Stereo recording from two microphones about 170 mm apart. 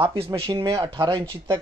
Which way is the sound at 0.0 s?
30° right (ahead or behind).